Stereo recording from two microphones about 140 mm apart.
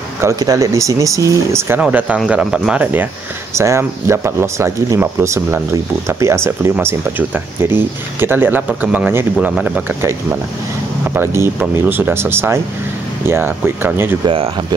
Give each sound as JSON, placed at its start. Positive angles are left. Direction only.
{"t": 0.2, "sound": "speech", "side_deg": -25}
{"t": 11.1, "sound": "speech", "side_deg": -15}
{"t": 14.2, "sound": "speech", "side_deg": -40}